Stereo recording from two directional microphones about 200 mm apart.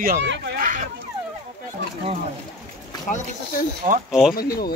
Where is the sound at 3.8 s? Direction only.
40° right (ahead or behind).